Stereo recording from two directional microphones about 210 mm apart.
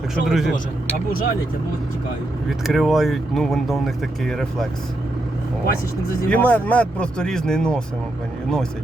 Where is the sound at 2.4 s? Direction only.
Centre (ahead or behind).